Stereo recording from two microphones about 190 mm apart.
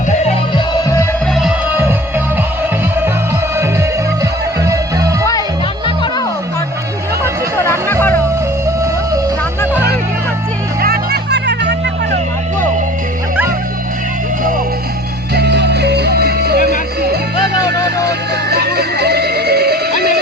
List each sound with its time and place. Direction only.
0.5 s music: 15° left (ahead or behind)
1.4 s music: 5° right (ahead or behind)
3.6 s music: 15° right (ahead or behind)
7.5 s music: 15° left (ahead or behind)
10.8 s music: 55° right (ahead or behind)
15.4 s music: 60° right (ahead or behind)